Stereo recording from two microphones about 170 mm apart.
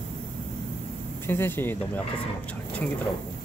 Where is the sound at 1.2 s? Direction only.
15° left (ahead or behind).